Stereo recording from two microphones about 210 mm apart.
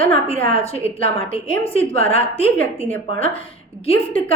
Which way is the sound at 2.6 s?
10° left (ahead or behind).